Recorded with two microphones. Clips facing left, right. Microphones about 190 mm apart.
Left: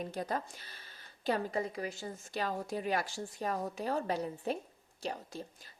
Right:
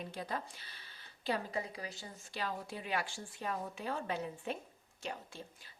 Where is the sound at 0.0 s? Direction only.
45° left (ahead or behind).